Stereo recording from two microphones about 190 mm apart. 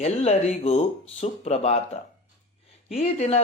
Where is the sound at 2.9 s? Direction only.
35° left (ahead or behind).